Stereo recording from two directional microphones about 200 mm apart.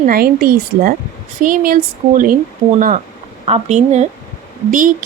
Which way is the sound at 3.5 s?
35° right (ahead or behind).